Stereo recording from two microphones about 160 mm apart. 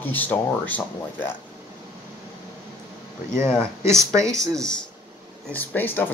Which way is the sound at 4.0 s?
20° right (ahead or behind).